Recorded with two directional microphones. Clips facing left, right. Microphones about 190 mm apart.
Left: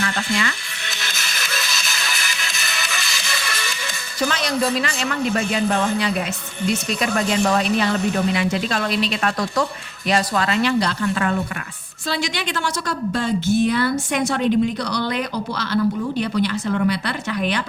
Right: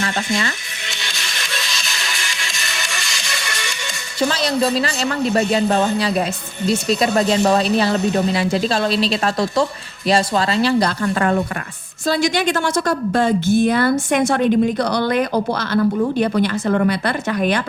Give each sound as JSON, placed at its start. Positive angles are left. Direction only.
{"t": 0.9, "sound": "music", "side_deg": 0}
{"t": 4.2, "sound": "a man's voice", "side_deg": -30}